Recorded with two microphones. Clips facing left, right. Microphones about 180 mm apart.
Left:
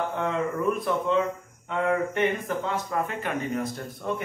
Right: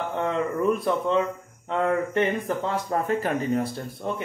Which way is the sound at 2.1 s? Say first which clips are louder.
Right 2 dB; 35° right (ahead or behind).